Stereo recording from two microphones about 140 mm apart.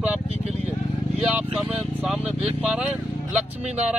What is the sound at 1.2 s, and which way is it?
Vehicle, 10° right (ahead or behind).